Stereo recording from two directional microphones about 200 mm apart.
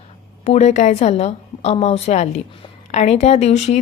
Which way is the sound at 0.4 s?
35° left (ahead or behind).